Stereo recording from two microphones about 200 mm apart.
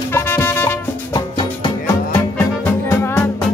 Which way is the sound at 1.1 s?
20° left (ahead or behind).